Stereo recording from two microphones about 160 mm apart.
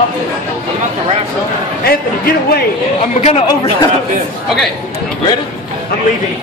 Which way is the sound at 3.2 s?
45° left (ahead or behind).